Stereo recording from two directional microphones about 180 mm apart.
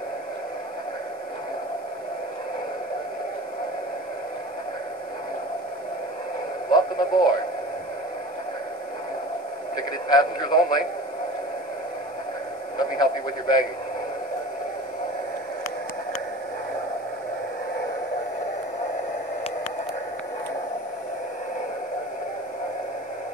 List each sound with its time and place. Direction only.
6.7 s radio: 25° left (ahead or behind)
9.8 s a man's voice: 20° left (ahead or behind)
12.7 s a man's voice: 20° left (ahead or behind)